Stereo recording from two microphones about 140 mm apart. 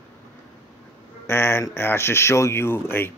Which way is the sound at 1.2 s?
15° left (ahead or behind).